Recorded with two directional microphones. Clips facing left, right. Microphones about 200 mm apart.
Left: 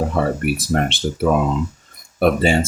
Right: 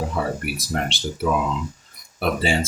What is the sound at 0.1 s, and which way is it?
Speech, 55° left (ahead or behind).